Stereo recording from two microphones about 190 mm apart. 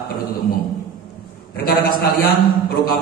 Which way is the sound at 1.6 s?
50° left (ahead or behind).